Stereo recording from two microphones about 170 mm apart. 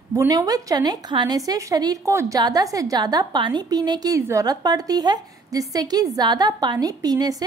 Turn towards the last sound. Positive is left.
turn(degrees=-20)  # may be behind; listen again after turning